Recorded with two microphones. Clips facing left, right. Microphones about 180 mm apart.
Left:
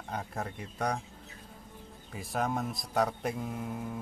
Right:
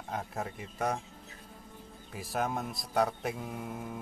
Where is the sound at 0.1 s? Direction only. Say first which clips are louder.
Even; centre (ahead or behind).